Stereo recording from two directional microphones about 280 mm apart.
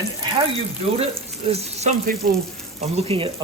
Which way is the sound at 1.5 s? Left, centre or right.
Right.